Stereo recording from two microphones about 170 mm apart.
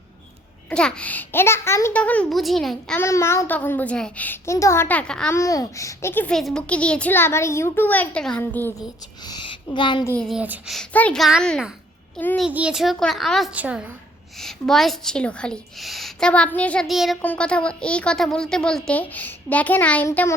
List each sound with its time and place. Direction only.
0.7 s a child's voice: 5° left (ahead or behind)
3.0 s a child's voice: 15° left (ahead or behind)
5.3 s a child's voice: 20° left (ahead or behind)
9.2 s a woman's voice: 25° left (ahead or behind)
10.0 s a child's voice: 15° left (ahead or behind)
10.2 s a woman's voice: 5° right (ahead or behind)
10.8 s a woman's voice: 5° left (ahead or behind)
12.1 s a child's voice: 10° left (ahead or behind)
12.4 s a woman's voice: 5° right (ahead or behind); by 20.3 s 15° left (ahead or behind)